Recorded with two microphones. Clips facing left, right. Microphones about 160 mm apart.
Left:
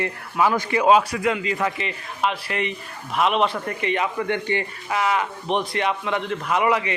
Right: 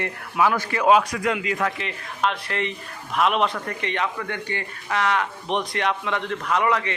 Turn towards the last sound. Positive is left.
turn(degrees=10)  # may be behind; listen again after turning